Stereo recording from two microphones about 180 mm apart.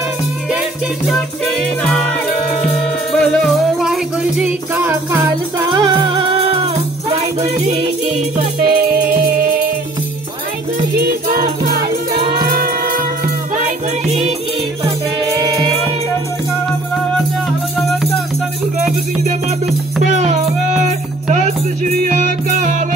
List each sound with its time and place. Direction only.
1.4 s music: 5° left (ahead or behind); by 5.3 s 10° right (ahead or behind)
5.7 s music: 25° right (ahead or behind)
8.6 s music: 50° right (ahead or behind)
11.0 s music: 55° right (ahead or behind)
15.4 s music: 25° right (ahead or behind)
20.0 s music: 40° right (ahead or behind)